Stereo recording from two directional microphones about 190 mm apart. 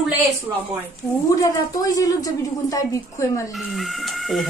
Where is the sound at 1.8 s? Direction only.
20° left (ahead or behind).